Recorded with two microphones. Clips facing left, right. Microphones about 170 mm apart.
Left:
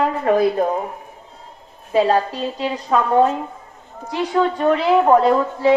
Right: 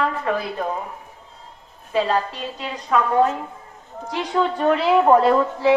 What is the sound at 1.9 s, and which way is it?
A woman's voice, 40° left (ahead or behind).